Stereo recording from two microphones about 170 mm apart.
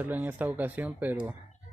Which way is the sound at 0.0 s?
10° right (ahead or behind).